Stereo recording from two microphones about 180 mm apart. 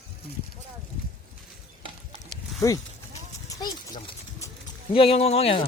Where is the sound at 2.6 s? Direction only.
20° left (ahead or behind).